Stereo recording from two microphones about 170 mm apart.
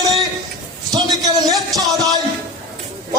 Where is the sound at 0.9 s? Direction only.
20° right (ahead or behind).